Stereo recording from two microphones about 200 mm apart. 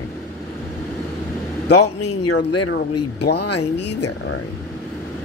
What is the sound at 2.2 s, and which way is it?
Speech, 90° left.